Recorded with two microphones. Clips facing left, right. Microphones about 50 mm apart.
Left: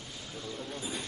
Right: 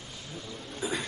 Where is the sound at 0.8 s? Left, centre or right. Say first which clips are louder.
Right 9 dB; right.